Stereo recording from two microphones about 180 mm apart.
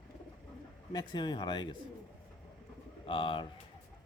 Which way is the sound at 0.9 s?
25° left (ahead or behind).